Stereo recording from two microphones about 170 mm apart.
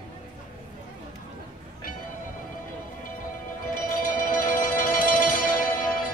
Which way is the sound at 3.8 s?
50° left (ahead or behind).